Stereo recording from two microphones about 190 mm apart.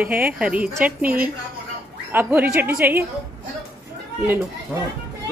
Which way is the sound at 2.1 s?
10° right (ahead or behind).